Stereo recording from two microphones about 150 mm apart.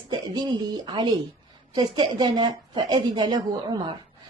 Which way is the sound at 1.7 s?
30° right (ahead or behind).